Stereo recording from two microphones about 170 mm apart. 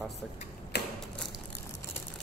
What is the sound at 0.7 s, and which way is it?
Typewriter, 70° left (ahead or behind).